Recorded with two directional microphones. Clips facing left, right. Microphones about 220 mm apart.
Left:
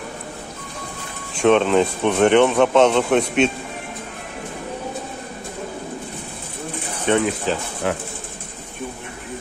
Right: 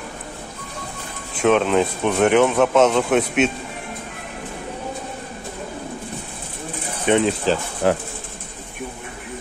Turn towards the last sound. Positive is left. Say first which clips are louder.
# right 4 dB
turn(degrees=-40)  # may be behind; listen again after turning